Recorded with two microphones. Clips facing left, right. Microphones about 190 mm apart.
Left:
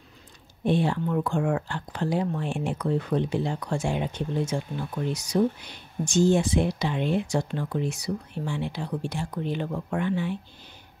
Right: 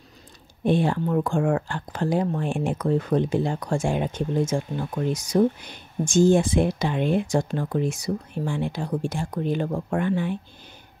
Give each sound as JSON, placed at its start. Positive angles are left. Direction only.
{"t": 0.7, "sound": "speech", "side_deg": -50}